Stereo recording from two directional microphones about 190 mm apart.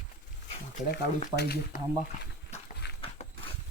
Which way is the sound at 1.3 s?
55° left (ahead or behind).